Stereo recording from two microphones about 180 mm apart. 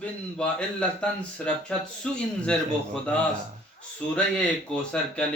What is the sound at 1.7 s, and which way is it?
Speech, 5° left (ahead or behind).